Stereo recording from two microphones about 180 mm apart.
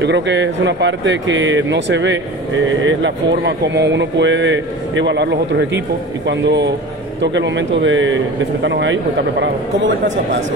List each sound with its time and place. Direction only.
0.0 s speech: 80° right